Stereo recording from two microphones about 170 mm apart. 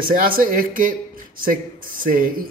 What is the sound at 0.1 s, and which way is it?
Speech, 55° right (ahead or behind).